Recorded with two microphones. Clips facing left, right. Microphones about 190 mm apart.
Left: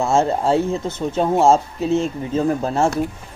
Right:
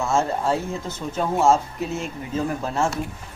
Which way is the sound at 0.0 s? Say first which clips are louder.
Left 5 dB; 25° left (ahead or behind).